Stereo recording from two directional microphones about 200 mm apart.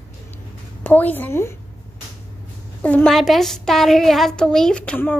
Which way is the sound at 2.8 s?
5° left (ahead or behind).